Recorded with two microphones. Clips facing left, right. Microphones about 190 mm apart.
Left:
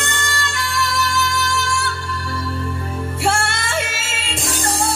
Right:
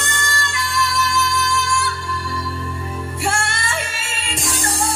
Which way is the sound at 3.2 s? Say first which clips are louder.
Left 3 dB; 65° left (ahead or behind).